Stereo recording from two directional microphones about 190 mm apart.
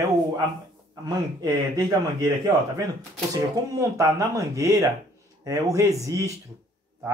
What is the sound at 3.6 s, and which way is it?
Speech, 20° right (ahead or behind).